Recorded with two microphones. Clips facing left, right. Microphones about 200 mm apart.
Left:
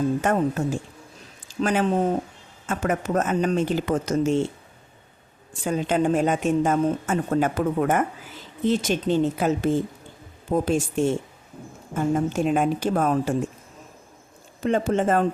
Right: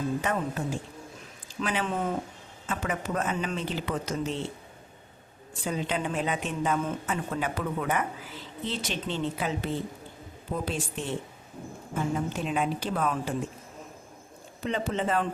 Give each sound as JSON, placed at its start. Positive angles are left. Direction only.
{"t": 0.2, "sound": "a woman's voice", "side_deg": 45}
{"t": 1.6, "sound": "a woman's voice", "side_deg": 40}
{"t": 5.6, "sound": "a woman's voice", "side_deg": 45}
{"t": 14.6, "sound": "a woman's voice", "side_deg": 45}